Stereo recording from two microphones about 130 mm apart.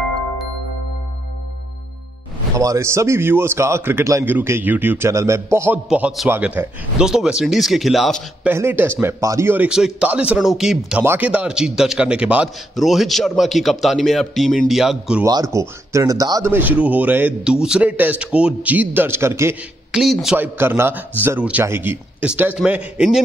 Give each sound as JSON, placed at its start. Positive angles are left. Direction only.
{"t": 2.5, "sound": "a man's voice", "side_deg": -25}
{"t": 5.9, "sound": "a man's voice", "side_deg": -5}
{"t": 8.5, "sound": "a man's voice", "side_deg": -15}
{"t": 9.7, "sound": "a man's voice", "side_deg": -5}
{"t": 15.2, "sound": "a man's voice", "side_deg": -25}
{"t": 16.5, "sound": "a man's voice", "side_deg": -15}
{"t": 19.9, "sound": "speech", "side_deg": 0}
{"t": 20.3, "sound": "a man's voice", "side_deg": -15}